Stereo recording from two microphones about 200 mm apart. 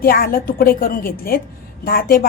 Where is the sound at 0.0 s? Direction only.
45° left (ahead or behind).